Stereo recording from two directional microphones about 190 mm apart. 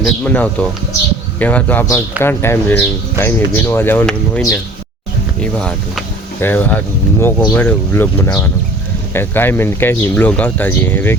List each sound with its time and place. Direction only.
0.0 s speech: 5° left (ahead or behind)
9.1 s speech: 10° left (ahead or behind)